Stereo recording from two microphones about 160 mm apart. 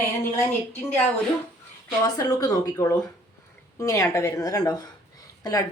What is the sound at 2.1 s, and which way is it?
A woman's voice, 25° left (ahead or behind).